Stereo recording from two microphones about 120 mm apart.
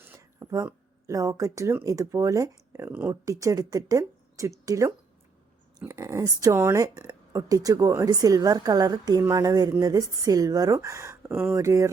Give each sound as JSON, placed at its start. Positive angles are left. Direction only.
{"t": 0.0, "sound": "a woman's voice", "side_deg": -20}
{"t": 5.9, "sound": "a woman's voice", "side_deg": -25}